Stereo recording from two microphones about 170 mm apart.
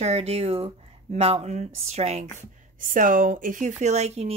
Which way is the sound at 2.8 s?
55° right (ahead or behind).